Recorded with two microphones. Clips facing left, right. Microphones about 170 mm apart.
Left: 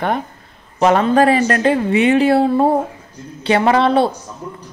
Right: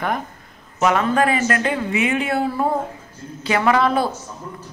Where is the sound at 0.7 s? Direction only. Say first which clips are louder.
Left 5 dB; 30° left (ahead or behind).